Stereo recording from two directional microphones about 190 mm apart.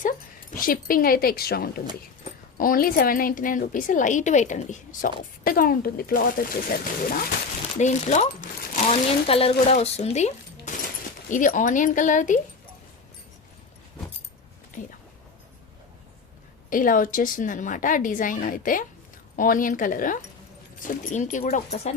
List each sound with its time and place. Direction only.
0.5 s a woman's voice: 50° left (ahead or behind)
7.8 s speech: 40° left (ahead or behind)
14.7 s a sound: 40° left (ahead or behind)
16.6 s a woman's voice: 45° left (ahead or behind)